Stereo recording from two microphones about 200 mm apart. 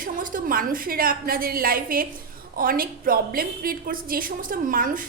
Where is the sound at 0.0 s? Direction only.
45° right (ahead or behind).